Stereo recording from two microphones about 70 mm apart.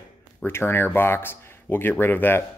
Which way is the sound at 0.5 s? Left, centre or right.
Left.